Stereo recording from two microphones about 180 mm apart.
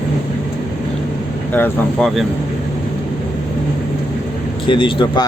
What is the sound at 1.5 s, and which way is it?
Speech, 10° left (ahead or behind).